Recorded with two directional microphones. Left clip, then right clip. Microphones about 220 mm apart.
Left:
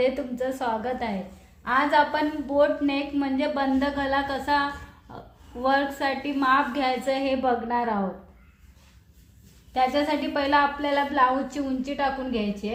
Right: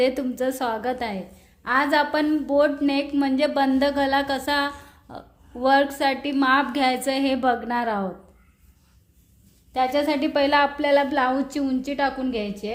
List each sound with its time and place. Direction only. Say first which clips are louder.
0.0 s a woman's voice: right 3 dB; 45° right (ahead or behind)
9.7 s a woman's voice: right 1 dB; 45° right (ahead or behind)